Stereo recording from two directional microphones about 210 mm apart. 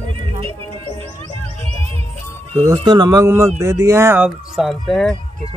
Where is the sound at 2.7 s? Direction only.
20° right (ahead or behind); by 5.2 s 5° left (ahead or behind).